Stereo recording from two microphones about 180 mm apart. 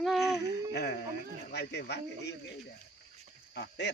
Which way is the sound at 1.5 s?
70° left (ahead or behind).